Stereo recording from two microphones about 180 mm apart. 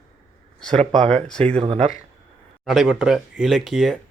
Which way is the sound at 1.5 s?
35° right (ahead or behind).